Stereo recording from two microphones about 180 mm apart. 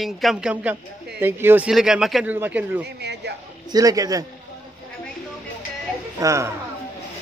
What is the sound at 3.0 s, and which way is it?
Speech, 70° right (ahead or behind).